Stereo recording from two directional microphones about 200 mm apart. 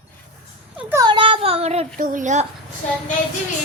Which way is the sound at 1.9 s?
40° right (ahead or behind).